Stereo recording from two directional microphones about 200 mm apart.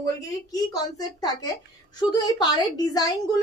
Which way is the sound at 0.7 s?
20° left (ahead or behind).